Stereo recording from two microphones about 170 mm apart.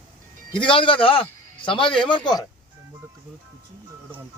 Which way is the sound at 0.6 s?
30° left (ahead or behind).